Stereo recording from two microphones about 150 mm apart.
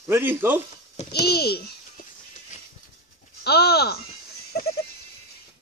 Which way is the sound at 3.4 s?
90° left.